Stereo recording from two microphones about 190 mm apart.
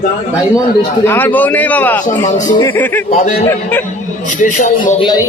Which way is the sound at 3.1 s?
40° left (ahead or behind).